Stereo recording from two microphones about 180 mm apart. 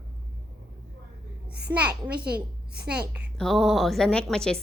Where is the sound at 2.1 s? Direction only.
60° right (ahead or behind).